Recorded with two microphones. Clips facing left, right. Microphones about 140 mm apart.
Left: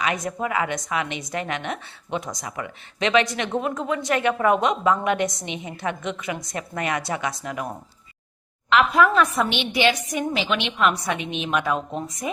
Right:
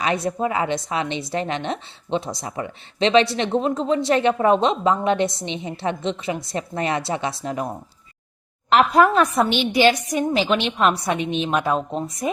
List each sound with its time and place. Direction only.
0.0 s a woman's voice: 30° right (ahead or behind)
8.7 s a woman's voice: 40° right (ahead or behind)